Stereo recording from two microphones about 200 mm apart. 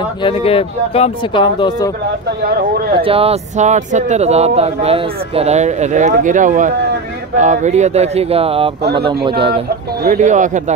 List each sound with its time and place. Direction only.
0.2 s speech: 30° left (ahead or behind)
3.0 s speech: 30° right (ahead or behind)
10.0 s speech: 40° right (ahead or behind)